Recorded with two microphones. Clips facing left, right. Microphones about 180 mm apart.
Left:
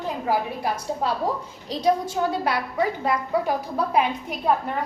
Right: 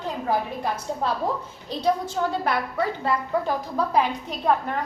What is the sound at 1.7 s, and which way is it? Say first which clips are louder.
A woman's voice: left 2 dB; 10° left (ahead or behind).